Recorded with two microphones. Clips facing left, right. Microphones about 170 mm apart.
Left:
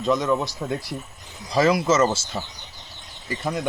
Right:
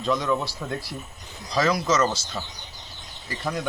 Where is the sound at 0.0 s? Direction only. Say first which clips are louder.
Left 3 dB; centre (ahead or behind).